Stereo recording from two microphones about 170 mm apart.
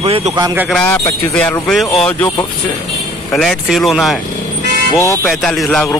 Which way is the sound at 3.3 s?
Centre (ahead or behind).